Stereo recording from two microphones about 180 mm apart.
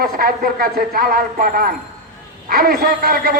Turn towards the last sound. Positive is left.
turn(degrees=-55)  # may be behind; listen again after turning